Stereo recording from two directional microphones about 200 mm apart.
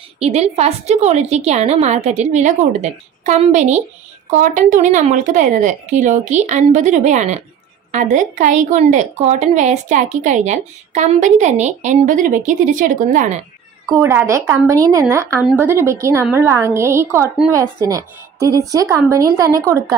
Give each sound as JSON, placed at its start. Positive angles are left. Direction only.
{"t": 0.2, "sound": "a woman's voice", "side_deg": -30}
{"t": 13.9, "sound": "speech", "side_deg": -10}